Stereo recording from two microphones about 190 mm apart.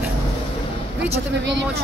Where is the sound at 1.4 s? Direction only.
65° right (ahead or behind).